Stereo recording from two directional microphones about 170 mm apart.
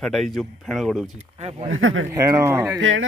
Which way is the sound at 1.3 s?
40° right (ahead or behind).